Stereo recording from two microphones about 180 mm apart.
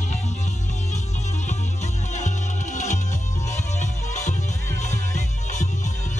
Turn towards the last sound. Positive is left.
turn(degrees=40)  # may be behind; listen again after turning